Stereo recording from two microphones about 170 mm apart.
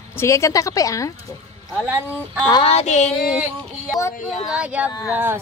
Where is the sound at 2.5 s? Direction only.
35° left (ahead or behind).